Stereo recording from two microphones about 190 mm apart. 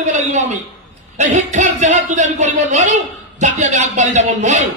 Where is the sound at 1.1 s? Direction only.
40° right (ahead or behind).